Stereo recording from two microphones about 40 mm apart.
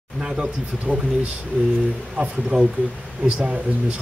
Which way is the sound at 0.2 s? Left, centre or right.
Right.